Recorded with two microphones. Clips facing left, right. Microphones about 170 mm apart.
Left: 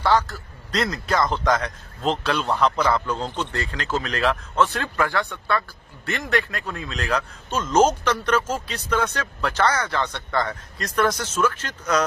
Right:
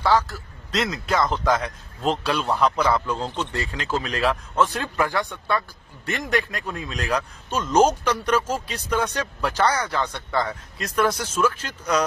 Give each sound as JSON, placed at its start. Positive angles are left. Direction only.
{"t": 0.0, "sound": "a man's voice", "side_deg": -5}